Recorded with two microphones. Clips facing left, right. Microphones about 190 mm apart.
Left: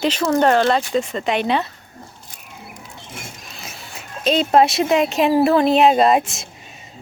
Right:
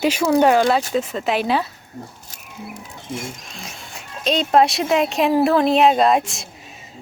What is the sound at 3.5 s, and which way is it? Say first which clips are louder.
A woman's voice: even; 5° left (ahead or behind).